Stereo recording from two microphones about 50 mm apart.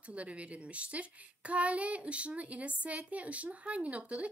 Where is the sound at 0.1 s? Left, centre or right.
Right.